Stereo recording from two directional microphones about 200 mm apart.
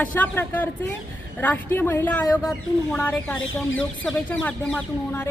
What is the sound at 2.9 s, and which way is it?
Speech, 10° left (ahead or behind).